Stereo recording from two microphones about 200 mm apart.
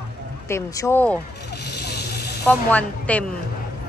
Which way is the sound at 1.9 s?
55° left (ahead or behind).